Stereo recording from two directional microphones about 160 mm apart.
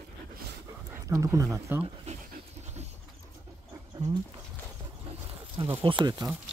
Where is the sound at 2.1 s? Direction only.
45° right (ahead or behind).